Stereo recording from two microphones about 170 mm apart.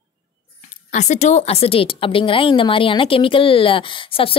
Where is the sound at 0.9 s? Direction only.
45° left (ahead or behind).